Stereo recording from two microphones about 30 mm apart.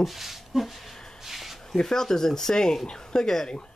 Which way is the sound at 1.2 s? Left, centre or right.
Centre.